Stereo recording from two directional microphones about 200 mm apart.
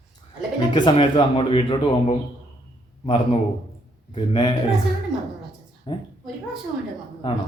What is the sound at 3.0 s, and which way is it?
Speech, 25° left (ahead or behind).